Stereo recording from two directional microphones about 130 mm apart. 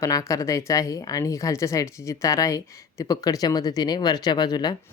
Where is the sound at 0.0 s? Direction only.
25° left (ahead or behind).